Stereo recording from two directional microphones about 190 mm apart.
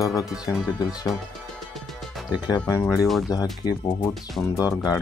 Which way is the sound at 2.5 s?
10° left (ahead or behind).